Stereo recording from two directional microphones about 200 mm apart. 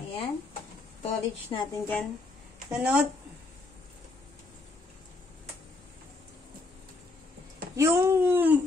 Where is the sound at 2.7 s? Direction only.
5° right (ahead or behind).